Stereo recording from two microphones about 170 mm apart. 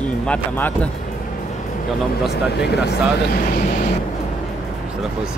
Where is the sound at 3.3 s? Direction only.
55° left (ahead or behind).